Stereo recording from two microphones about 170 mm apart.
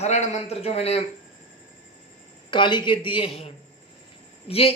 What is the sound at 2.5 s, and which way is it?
A man's voice, 30° left (ahead or behind).